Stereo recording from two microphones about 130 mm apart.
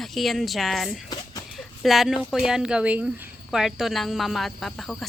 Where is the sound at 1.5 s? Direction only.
Centre (ahead or behind).